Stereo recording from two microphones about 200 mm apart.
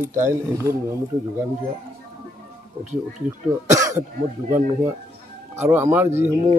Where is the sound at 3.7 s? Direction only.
15° right (ahead or behind).